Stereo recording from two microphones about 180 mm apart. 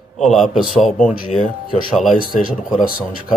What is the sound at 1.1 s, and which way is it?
Speech, 50° left (ahead or behind).